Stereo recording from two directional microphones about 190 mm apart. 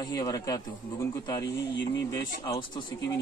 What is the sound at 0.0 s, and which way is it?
Speech, 20° left (ahead or behind).